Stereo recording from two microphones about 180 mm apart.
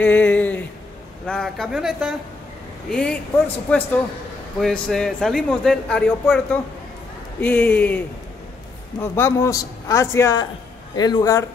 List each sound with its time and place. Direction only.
0.0 s speech: 10° left (ahead or behind)
9.0 s speech: 10° left (ahead or behind)